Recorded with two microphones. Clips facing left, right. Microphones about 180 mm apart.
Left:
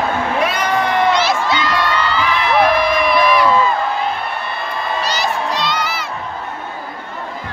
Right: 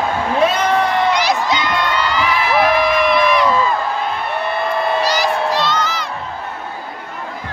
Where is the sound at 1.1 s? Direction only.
15° right (ahead or behind); by 3.4 s centre (ahead or behind).